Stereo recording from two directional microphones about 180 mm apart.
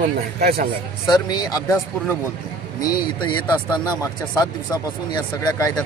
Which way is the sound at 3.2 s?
25° left (ahead or behind).